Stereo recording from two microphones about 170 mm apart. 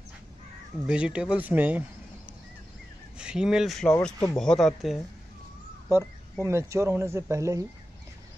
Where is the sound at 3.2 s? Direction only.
5° right (ahead or behind).